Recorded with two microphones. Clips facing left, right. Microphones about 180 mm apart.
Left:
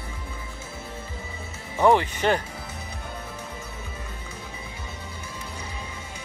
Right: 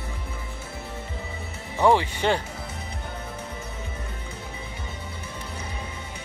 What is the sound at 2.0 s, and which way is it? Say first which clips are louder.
Speech: left 1 dB; 15° right (ahead or behind).